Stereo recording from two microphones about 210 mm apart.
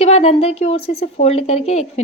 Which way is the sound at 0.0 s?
30° left (ahead or behind).